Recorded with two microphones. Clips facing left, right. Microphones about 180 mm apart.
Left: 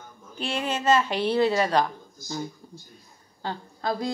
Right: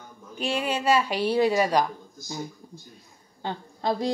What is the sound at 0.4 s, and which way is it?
Speech, 10° right (ahead or behind).